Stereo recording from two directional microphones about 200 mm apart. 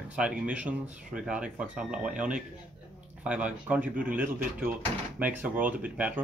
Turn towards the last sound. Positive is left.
turn(degrees=-5)  # may be behind; listen again after turning